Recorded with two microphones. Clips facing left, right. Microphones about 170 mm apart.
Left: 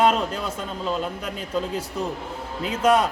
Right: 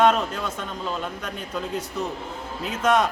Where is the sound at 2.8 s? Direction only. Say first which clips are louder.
Left 2 dB; 10° left (ahead or behind).